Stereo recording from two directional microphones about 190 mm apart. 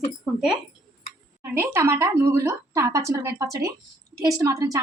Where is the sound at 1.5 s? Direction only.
15° right (ahead or behind).